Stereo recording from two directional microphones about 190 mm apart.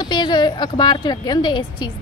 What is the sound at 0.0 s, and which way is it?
A woman's voice, 25° left (ahead or behind).